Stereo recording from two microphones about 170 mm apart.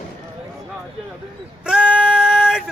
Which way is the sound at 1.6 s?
5° right (ahead or behind).